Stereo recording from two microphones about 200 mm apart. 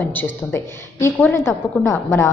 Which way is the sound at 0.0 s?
10° left (ahead or behind).